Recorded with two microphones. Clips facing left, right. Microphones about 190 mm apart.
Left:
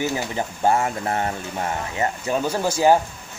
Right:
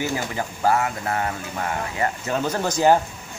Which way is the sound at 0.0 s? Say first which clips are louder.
Left 1 dB; 20° left (ahead or behind).